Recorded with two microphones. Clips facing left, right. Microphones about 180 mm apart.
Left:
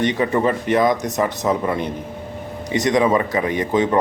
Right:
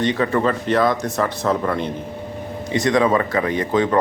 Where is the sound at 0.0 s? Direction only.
20° left (ahead or behind).